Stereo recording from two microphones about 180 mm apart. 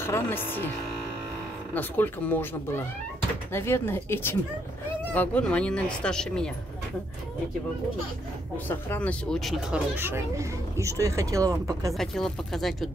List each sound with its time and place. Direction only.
0.0 s speech: 15° left (ahead or behind)
1.7 s speech: 10° left (ahead or behind)
8.6 s speech: 10° left (ahead or behind)
9.9 s speech: 15° right (ahead or behind)
12.0 s speech: centre (ahead or behind)